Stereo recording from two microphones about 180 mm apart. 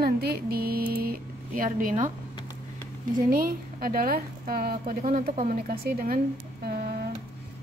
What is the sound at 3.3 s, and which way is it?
Speech, 55° right (ahead or behind).